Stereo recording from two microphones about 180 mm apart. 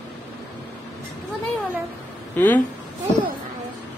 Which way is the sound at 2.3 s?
10° left (ahead or behind).